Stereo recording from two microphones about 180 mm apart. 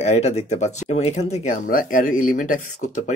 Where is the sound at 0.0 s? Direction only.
35° left (ahead or behind).